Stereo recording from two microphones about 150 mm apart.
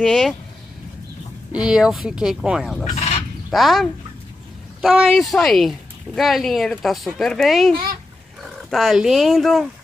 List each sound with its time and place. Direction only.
0.0 s speech: centre (ahead or behind)
1.5 s speech: 5° right (ahead or behind)
2.9 s speech: 45° left (ahead or behind)
3.4 s speech: centre (ahead or behind)